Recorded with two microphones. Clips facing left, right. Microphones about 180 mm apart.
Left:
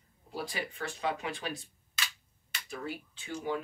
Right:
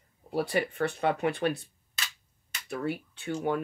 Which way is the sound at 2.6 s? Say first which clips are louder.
Right 7 dB; 65° right (ahead or behind).